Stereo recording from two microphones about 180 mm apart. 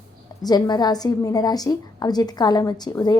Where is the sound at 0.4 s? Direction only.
20° left (ahead or behind).